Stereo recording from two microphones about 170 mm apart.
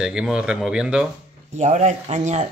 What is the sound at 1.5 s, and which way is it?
Speech, 45° right (ahead or behind).